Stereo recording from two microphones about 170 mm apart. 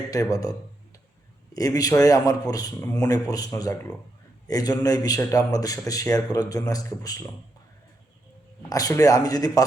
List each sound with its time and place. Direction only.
0.1 s a man's voice: 20° left (ahead or behind)
1.5 s a man's voice: 20° left (ahead or behind)
8.7 s a man's voice: 20° left (ahead or behind)